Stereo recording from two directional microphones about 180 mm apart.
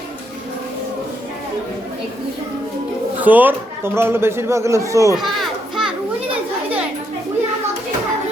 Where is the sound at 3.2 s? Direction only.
10° right (ahead or behind).